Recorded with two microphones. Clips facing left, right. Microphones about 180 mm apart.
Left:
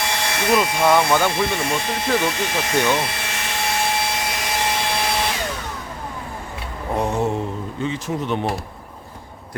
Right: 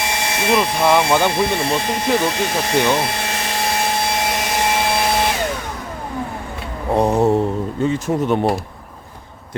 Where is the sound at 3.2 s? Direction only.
35° right (ahead or behind).